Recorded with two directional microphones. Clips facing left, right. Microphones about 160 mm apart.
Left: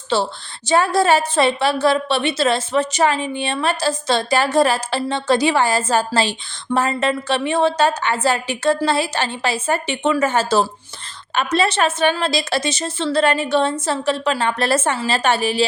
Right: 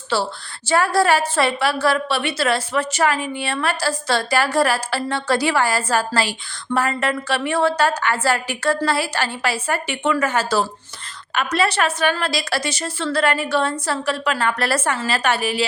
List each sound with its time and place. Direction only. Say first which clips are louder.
0.1 s a woman's voice: left 2 dB; 20° left (ahead or behind)